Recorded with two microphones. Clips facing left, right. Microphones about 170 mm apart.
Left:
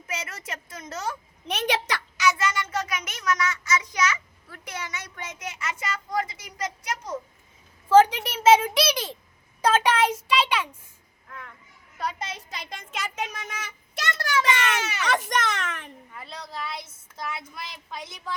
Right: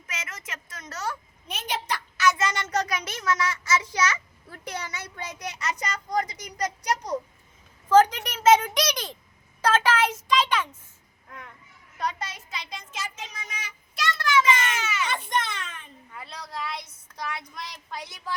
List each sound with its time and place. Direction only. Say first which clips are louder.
0.1 s a woman's voice: left 4 dB; 35° left (ahead or behind)
1.5 s a child's voice: left 4 dB; 75° left (ahead or behind)
2.4 s a child's voice: right 1 dB; 40° right (ahead or behind)
7.9 s a child's voice: left 2 dB; 10° left (ahead or behind)
12.5 s a child's voice: even; 50° left (ahead or behind)
14.4 s a child's voice: even; 70° left (ahead or behind)
16.1 s speech: right 1 dB; centre (ahead or behind)